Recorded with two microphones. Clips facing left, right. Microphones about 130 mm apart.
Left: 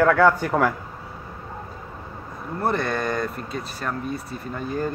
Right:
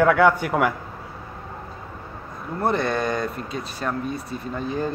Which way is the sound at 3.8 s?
20° right (ahead or behind).